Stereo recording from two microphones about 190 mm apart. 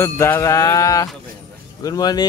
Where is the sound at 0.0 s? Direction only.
15° left (ahead or behind).